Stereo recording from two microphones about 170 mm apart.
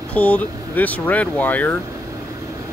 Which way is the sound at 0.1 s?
10° left (ahead or behind).